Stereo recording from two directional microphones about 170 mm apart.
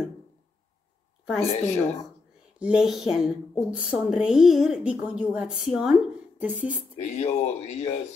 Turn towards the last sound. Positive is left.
turn(degrees=40)  # may be behind; listen again after turning